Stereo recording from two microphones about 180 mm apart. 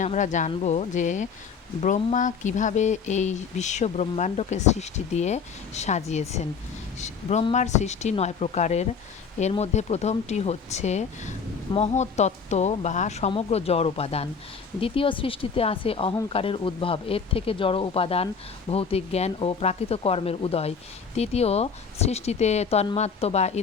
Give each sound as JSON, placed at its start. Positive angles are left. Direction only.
{"t": 0.0, "sound": "speech", "side_deg": 45}